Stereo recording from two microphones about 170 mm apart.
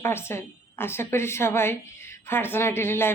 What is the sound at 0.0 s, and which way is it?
A woman's voice, 15° left (ahead or behind).